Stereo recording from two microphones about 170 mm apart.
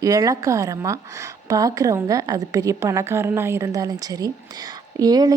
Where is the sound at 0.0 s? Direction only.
20° right (ahead or behind).